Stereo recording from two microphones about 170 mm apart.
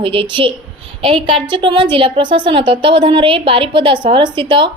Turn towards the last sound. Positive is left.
turn(degrees=-30)  # may be behind; listen again after turning